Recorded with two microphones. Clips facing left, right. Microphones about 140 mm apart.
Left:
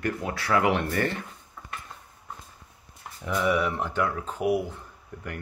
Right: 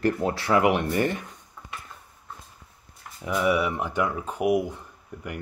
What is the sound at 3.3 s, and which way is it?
Speech, 10° right (ahead or behind).